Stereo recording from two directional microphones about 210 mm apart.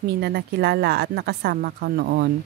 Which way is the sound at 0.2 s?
50° right (ahead or behind).